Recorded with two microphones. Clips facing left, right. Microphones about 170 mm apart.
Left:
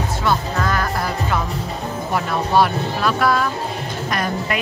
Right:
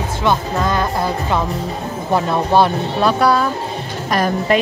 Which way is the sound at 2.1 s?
25° right (ahead or behind).